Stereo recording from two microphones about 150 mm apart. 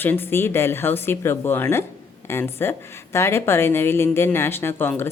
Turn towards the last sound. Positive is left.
turn(degrees=15)  # may be behind; listen again after turning